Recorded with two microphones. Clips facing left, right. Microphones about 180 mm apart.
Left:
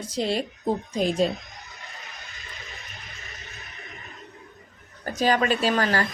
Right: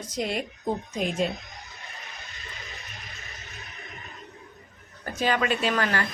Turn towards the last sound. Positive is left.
turn(degrees=35)  # may be behind; listen again after turning